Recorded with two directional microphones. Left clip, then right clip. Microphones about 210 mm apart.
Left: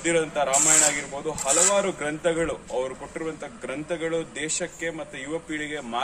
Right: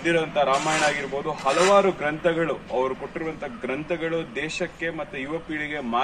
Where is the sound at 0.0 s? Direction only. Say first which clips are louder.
Right 2 dB; 25° left (ahead or behind).